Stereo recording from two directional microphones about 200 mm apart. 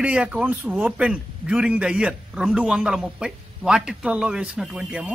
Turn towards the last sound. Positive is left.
turn(degrees=-5)  # may be behind; listen again after turning